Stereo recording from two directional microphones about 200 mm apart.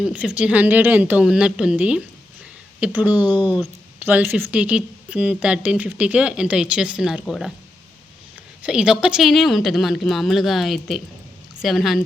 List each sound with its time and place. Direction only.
0.0 s speech: 5° right (ahead or behind)
8.6 s speech: 5° right (ahead or behind)